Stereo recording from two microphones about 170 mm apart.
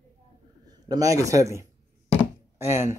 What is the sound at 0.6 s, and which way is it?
A man's voice, 20° right (ahead or behind).